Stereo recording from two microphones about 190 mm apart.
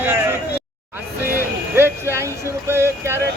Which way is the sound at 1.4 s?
10° right (ahead or behind).